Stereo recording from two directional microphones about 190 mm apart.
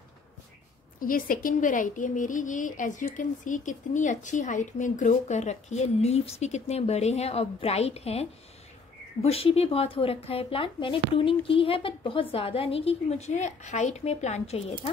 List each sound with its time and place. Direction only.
0.9 s a woman's voice: 45° left (ahead or behind)